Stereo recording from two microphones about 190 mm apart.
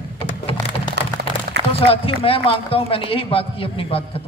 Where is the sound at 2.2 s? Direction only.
30° left (ahead or behind).